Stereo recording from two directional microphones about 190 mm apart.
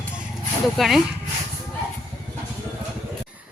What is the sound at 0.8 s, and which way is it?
Speech, centre (ahead or behind).